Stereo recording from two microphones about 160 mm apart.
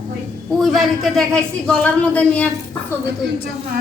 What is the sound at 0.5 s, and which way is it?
A man's voice, centre (ahead or behind).